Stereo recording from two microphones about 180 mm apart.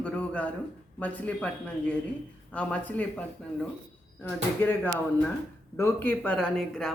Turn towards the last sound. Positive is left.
turn(degrees=0)  # may be behind; listen again after turning